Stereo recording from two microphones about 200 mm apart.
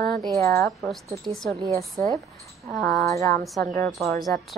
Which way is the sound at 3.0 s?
15° left (ahead or behind).